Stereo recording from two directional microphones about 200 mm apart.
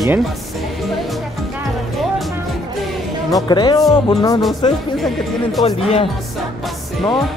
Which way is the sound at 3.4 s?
20° left (ahead or behind).